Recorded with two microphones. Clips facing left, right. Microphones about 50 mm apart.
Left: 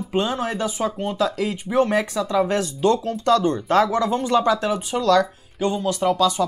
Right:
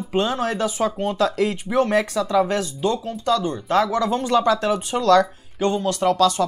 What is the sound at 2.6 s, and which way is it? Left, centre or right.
Speech, left.